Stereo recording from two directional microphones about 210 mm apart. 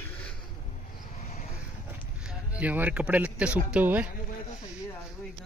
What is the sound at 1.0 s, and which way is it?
Vehicle, 40° left (ahead or behind).